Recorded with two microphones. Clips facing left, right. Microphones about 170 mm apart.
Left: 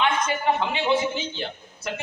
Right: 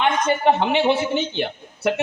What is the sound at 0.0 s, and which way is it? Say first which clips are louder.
A man's voice: right 5 dB; 60° right (ahead or behind).